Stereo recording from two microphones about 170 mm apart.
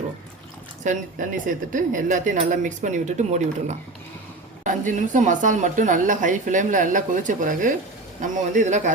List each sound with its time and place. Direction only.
1.5 s a woman's voice: 50° right (ahead or behind)